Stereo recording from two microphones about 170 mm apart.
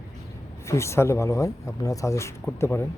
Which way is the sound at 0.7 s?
15° left (ahead or behind).